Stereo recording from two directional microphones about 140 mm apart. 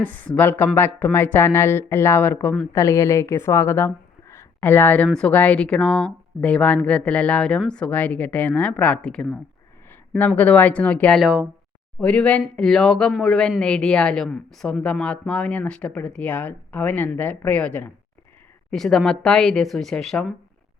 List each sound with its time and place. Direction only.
0.0 s a woman's voice: 10° left (ahead or behind)
11.2 s speech: 5° right (ahead or behind)
11.9 s speech: 10° left (ahead or behind)